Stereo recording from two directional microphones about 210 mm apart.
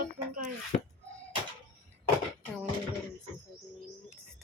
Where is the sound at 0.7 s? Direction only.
30° left (ahead or behind).